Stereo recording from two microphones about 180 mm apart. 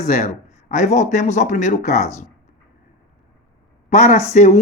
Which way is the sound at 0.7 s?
40° left (ahead or behind).